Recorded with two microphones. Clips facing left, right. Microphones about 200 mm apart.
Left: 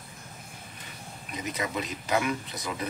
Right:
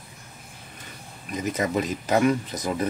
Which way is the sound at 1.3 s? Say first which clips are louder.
Right 7 dB; 45° right (ahead or behind).